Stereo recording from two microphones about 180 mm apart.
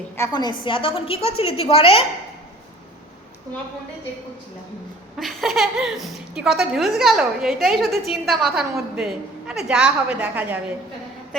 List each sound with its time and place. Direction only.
0.2 s a woman's voice: 25° left (ahead or behind)
5.1 s a woman's voice: centre (ahead or behind)